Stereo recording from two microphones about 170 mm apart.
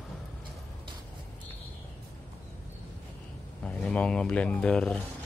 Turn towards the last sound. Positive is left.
turn(degrees=5)  # may be behind; listen again after turning